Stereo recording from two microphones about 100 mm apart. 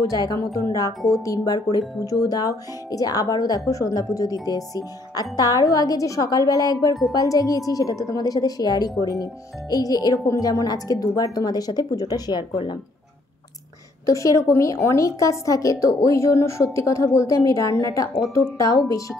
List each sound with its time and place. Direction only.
0.0 s speech: 35° left (ahead or behind)
14.0 s speech: 35° left (ahead or behind)